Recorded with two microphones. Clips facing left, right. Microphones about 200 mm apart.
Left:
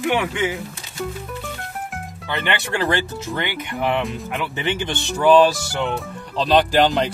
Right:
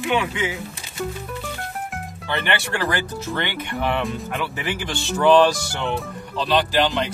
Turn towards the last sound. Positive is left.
turn(degrees=40)  # may be behind; listen again after turning